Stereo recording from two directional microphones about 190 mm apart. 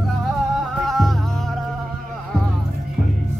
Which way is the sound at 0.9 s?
Centre (ahead or behind).